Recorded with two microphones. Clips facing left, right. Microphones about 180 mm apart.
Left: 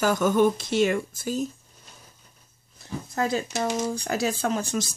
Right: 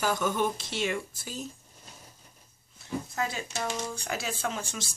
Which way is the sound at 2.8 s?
40° left (ahead or behind).